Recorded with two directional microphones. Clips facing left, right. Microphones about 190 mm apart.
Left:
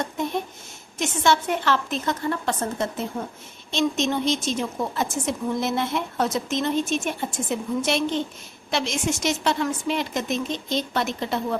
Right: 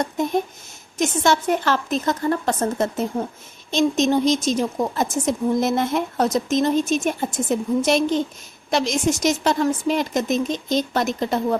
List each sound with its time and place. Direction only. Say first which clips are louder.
0.0 s a woman's voice: right 5 dB; 40° right (ahead or behind)